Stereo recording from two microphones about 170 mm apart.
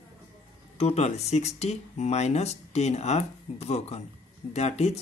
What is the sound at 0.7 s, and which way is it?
Speech, 40° left (ahead or behind).